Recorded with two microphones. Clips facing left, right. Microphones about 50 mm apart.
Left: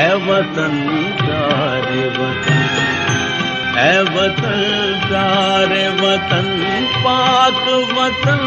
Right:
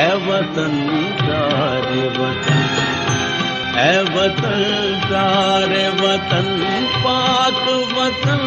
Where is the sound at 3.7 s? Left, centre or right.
Left.